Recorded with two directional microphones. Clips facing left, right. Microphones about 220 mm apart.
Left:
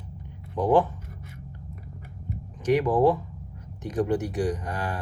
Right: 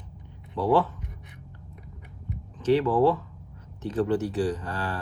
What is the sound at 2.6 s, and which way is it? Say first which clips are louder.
Speech: even; 15° left (ahead or behind).